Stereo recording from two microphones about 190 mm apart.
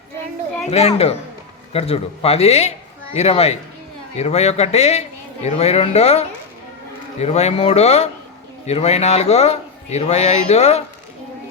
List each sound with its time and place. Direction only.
0.6 s a man's voice: 35° left (ahead or behind)